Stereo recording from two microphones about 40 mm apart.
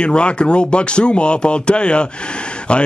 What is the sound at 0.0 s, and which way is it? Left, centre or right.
A man's voice, left.